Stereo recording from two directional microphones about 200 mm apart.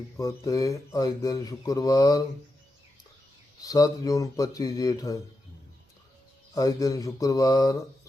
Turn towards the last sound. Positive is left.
turn(degrees=20)  # may be behind; listen again after turning